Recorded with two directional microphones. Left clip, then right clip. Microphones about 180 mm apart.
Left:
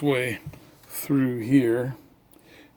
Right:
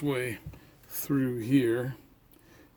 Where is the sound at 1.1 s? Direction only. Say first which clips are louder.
Left 5 dB; 5° left (ahead or behind).